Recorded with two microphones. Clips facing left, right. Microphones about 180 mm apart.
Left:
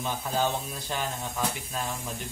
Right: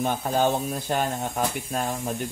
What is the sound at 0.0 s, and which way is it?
Speech, 55° right (ahead or behind).